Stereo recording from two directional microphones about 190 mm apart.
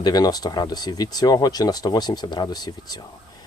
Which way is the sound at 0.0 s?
20° left (ahead or behind).